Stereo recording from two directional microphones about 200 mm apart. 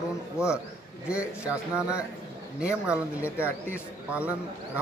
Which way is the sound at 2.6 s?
5° right (ahead or behind).